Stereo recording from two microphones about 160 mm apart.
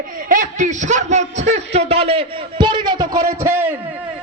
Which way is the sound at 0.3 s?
55° right (ahead or behind).